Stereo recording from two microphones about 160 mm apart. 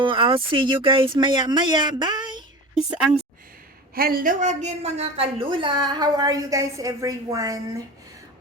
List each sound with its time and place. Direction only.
0.0 s a woman's voice: 35° right (ahead or behind)
3.9 s a woman's voice: 65° right (ahead or behind); by 7.6 s 20° right (ahead or behind)